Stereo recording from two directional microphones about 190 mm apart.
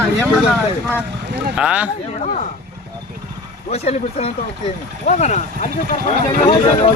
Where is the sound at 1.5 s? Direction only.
5° right (ahead or behind).